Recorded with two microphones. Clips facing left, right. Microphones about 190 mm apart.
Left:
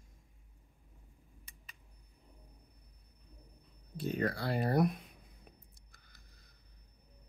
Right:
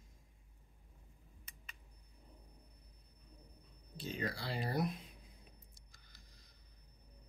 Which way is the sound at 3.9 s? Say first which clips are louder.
Left 7 dB; 60° left (ahead or behind).